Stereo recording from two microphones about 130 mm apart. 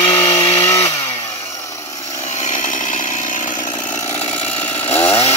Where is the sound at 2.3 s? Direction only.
70° left (ahead or behind).